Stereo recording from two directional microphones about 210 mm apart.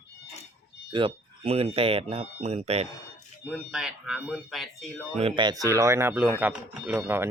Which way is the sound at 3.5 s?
Centre (ahead or behind).